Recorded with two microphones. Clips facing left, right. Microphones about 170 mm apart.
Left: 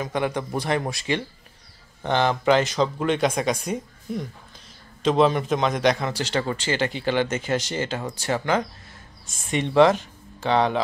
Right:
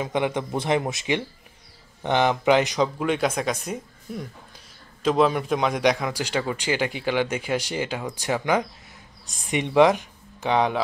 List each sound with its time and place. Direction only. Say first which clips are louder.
0.0 s a man's voice: right 1 dB; 20° right (ahead or behind)
3.0 s a man's voice: left 1 dB; 5° right (ahead or behind)